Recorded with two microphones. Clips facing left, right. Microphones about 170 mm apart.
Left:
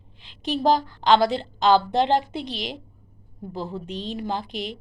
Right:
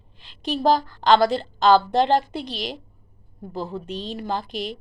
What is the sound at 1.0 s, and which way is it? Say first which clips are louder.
Speech: right 1 dB; 40° right (ahead or behind).